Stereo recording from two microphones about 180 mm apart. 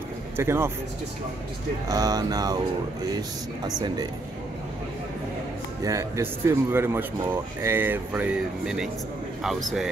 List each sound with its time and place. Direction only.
0.4 s speech: 15° right (ahead or behind)
1.9 s speech: 20° right (ahead or behind)
5.9 s speech: 15° right (ahead or behind); by 9.8 s centre (ahead or behind)